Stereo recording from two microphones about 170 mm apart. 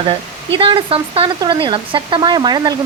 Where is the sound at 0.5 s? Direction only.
30° right (ahead or behind).